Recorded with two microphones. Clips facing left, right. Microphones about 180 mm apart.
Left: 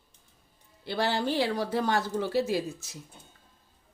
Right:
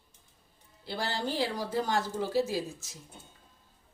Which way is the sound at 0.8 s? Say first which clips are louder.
Left 5 dB; 70° left (ahead or behind).